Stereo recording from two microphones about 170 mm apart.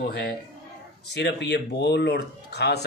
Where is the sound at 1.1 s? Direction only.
90° left.